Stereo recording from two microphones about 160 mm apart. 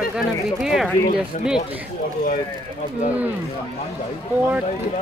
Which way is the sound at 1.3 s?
50° left (ahead or behind).